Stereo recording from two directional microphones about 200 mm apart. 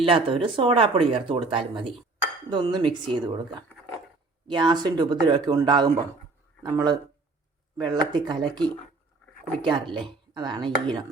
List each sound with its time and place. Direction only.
0.0 s speech: 25° right (ahead or behind)
4.4 s speech: 25° right (ahead or behind)